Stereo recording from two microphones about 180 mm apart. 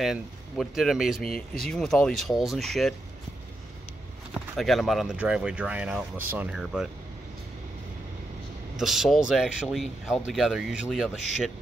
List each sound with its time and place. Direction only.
0.0 s speech: centre (ahead or behind)
4.6 s speech: centre (ahead or behind)
8.7 s speech: centre (ahead or behind)